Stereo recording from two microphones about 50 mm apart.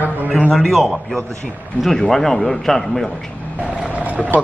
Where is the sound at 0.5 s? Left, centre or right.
Centre.